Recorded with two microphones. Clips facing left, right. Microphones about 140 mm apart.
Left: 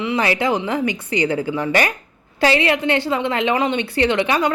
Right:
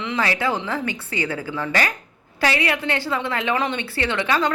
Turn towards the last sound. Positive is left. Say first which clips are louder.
# left 4 dB
turn(degrees=15)  # may be behind; listen again after turning